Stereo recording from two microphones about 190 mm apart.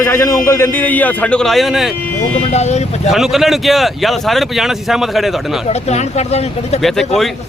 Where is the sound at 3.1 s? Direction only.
Centre (ahead or behind).